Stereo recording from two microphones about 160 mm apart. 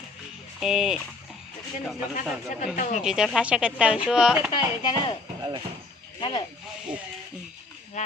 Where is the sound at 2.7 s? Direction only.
50° left (ahead or behind).